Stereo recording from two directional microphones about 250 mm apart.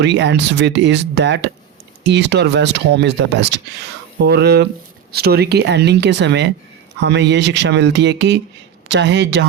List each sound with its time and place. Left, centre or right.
0.0 s speech: right